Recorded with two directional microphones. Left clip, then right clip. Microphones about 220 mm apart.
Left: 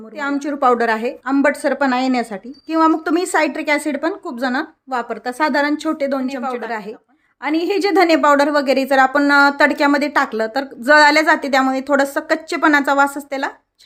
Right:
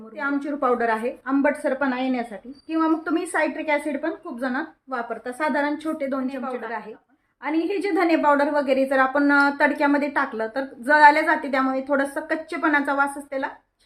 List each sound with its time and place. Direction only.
0.2 s a woman's voice: 40° left (ahead or behind)